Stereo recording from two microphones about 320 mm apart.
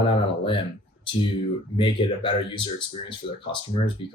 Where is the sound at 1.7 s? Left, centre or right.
Centre.